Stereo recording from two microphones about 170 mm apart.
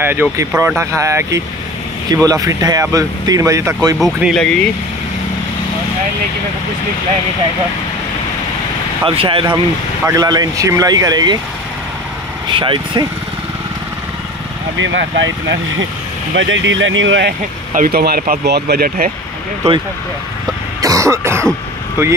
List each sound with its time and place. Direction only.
0.0 s speech: 10° right (ahead or behind)
4.0 s speech: centre (ahead or behind)
9.0 s speech: 30° right (ahead or behind)
10.0 s speech: 20° right (ahead or behind)
12.4 s speech: 30° right (ahead or behind)
14.8 s speech: 90° right
17.7 s speech: 65° right (ahead or behind)
20.8 s throat clearing: 20° right (ahead or behind)